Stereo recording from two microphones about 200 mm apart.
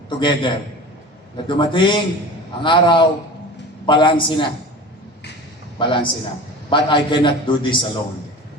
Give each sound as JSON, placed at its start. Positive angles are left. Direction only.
{"t": 0.2, "sound": "a man's voice", "side_deg": 25}
{"t": 5.8, "sound": "a man's voice", "side_deg": 25}